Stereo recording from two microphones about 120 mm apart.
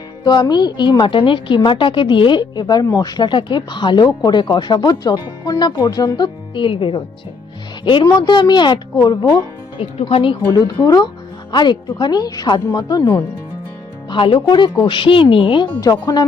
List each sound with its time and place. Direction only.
0.3 s speech: 40° left (ahead or behind)
8.0 s speech: 35° left (ahead or behind)
9.7 s speech: 50° left (ahead or behind)
10.5 s speech: 35° left (ahead or behind)
14.1 s speech: 45° left (ahead or behind)